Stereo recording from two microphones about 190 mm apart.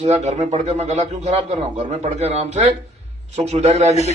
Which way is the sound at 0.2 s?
35° right (ahead or behind).